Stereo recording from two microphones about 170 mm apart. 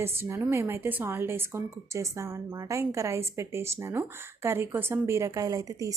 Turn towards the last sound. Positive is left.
turn(degrees=-20)  # may be behind; listen again after turning